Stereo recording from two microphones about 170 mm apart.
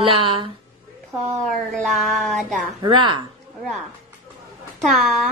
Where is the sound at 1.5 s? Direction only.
Centre (ahead or behind).